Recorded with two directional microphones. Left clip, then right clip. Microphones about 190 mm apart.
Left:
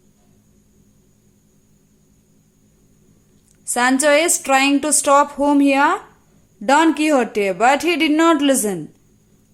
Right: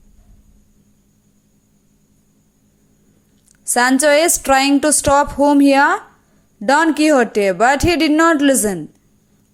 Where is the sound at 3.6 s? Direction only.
20° right (ahead or behind).